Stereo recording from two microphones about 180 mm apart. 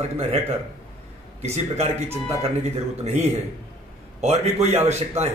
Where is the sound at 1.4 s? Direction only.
40° right (ahead or behind).